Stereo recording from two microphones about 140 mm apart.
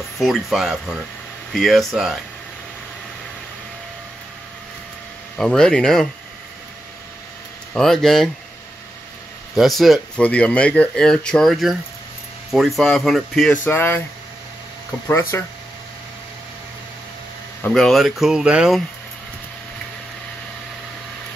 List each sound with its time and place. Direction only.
0.2 s speech: centre (ahead or behind)
5.4 s speech: 5° left (ahead or behind)
7.7 s speech: 5° left (ahead or behind)
9.6 s speech: centre (ahead or behind)
13.7 s speech: 15° left (ahead or behind)
15.0 s speech: 20° left (ahead or behind)
17.6 s speech: 5° left (ahead or behind)